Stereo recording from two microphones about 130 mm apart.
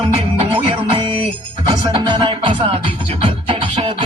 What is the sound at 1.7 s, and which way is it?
Music, 35° right (ahead or behind).